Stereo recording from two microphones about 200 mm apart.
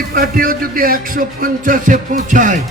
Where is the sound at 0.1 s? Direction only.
45° right (ahead or behind).